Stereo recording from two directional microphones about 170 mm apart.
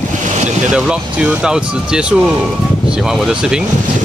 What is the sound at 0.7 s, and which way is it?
Speech, 5° right (ahead or behind).